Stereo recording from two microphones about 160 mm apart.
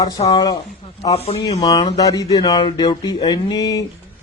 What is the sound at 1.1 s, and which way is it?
Speech, 40° left (ahead or behind).